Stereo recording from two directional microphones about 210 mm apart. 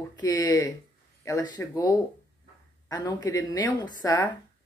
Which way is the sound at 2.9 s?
20° left (ahead or behind).